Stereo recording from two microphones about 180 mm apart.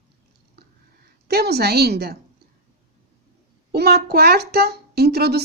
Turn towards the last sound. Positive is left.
turn(degrees=-65)  # may be behind; listen again after turning